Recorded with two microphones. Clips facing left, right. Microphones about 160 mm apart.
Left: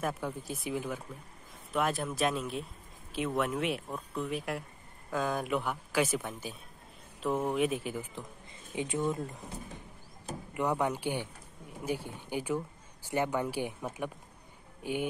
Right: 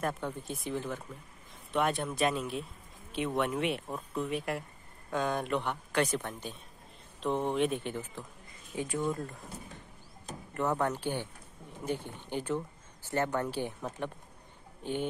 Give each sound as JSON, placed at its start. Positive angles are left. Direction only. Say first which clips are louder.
{"t": 0.0, "sound": "speech", "louder": "even", "side_deg": 5}
{"t": 8.7, "sound": "speech", "louder": "left 1 dB", "side_deg": 20}